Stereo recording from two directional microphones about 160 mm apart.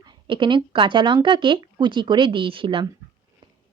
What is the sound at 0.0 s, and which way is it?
A woman's voice, 30° right (ahead or behind).